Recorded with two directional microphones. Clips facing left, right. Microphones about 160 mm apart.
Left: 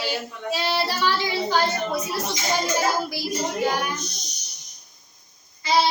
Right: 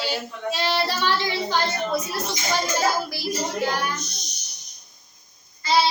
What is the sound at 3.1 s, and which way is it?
Speech, 15° left (ahead or behind).